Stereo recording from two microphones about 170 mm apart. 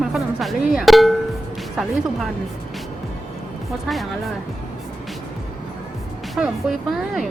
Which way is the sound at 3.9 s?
Centre (ahead or behind).